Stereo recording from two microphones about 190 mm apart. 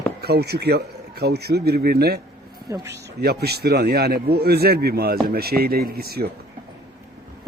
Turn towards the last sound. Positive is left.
turn(degrees=-55)  # may be behind; listen again after turning